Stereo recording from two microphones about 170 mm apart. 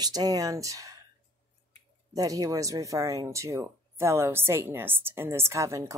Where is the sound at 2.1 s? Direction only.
20° right (ahead or behind).